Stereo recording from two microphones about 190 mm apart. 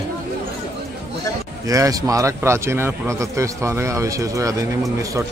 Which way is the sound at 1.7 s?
15° right (ahead or behind).